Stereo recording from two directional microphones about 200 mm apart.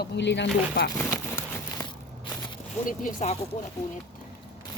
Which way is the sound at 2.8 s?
40° left (ahead or behind).